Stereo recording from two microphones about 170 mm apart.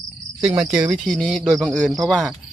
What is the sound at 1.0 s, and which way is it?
Speech, centre (ahead or behind).